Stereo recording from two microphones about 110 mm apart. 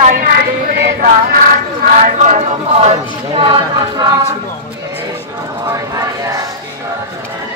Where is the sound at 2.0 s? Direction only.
85° right.